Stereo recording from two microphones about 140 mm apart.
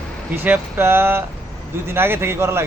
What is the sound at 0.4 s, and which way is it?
A man's voice, 15° right (ahead or behind).